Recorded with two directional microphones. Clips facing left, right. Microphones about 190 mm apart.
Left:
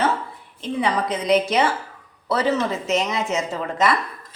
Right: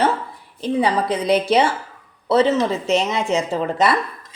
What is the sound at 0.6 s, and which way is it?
A woman's voice, 35° right (ahead or behind).